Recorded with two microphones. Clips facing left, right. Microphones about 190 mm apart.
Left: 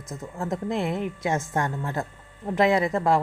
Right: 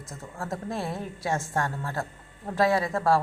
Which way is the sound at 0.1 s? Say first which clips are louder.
Left 5 dB; 20° left (ahead or behind).